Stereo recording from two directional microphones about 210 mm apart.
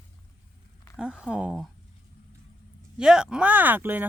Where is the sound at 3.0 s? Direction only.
5° right (ahead or behind).